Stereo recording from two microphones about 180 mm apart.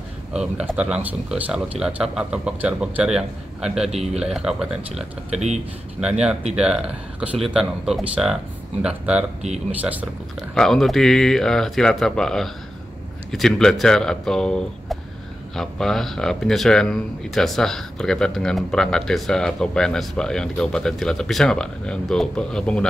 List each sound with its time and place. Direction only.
0.3 s speech: 5° right (ahead or behind)
3.9 s speech: 35° right (ahead or behind)
4.2 s speech: 5° right (ahead or behind)
5.3 s speech: 40° right (ahead or behind)
5.9 s speech: 5° right (ahead or behind)
10.5 s speech: centre (ahead or behind)